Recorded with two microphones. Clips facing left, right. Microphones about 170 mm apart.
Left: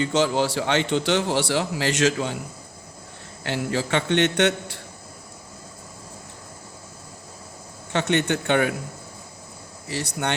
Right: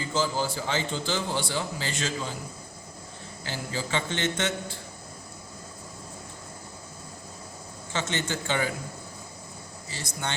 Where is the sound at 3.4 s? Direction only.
70° left (ahead or behind).